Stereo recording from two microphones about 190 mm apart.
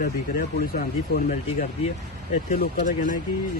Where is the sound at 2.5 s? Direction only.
45° left (ahead or behind).